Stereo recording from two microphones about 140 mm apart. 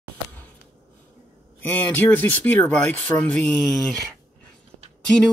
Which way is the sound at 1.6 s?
10° left (ahead or behind).